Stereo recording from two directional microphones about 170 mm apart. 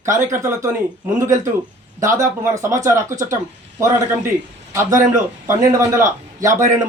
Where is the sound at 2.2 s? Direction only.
15° right (ahead or behind).